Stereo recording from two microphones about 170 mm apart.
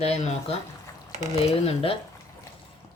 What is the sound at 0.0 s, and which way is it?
Speech, 35° left (ahead or behind).